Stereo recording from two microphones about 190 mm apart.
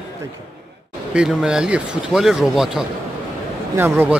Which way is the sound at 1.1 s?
5° right (ahead or behind).